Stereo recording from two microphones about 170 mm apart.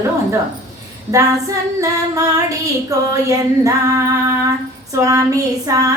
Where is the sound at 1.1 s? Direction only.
20° right (ahead or behind).